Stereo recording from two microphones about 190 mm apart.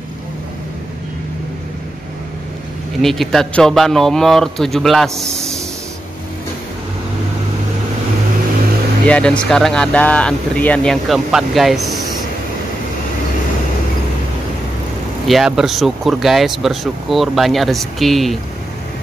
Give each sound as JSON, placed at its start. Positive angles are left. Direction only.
{"t": 3.0, "sound": "speech", "side_deg": 0}
{"t": 9.0, "sound": "speech", "side_deg": 5}
{"t": 15.2, "sound": "speech", "side_deg": 0}